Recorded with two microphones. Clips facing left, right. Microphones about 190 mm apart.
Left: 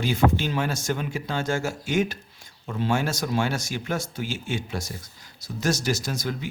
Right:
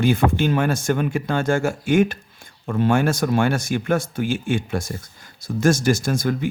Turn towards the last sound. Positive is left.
turn(degrees=-50)  # may be behind; listen again after turning